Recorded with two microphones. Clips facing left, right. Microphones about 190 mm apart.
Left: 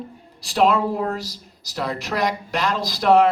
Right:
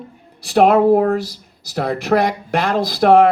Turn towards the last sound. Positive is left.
turn(degrees=-55)  # may be behind; listen again after turning